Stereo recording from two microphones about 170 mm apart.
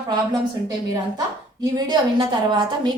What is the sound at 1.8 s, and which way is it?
A woman's voice, 25° right (ahead or behind).